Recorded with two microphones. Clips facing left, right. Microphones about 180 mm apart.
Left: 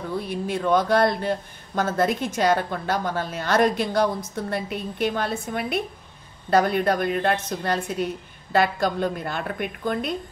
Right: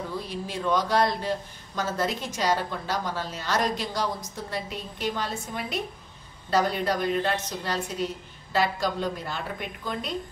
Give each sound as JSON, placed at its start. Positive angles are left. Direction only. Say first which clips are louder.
{"t": 0.3, "sound": "a woman's voice", "louder": "left 6 dB", "side_deg": 55}